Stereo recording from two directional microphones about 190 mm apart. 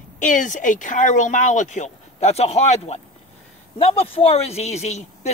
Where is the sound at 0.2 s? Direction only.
40° left (ahead or behind).